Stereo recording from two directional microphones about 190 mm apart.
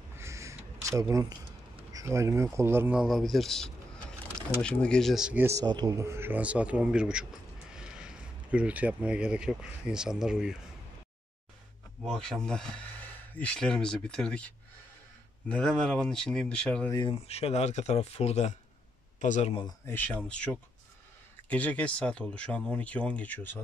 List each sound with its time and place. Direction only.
0.2 s a sound: 15° right (ahead or behind)
1.9 s speech: 15° right (ahead or behind)
12.0 s speech: centre (ahead or behind)
17.3 s speech: 35° left (ahead or behind)
19.9 s speech: 10° left (ahead or behind)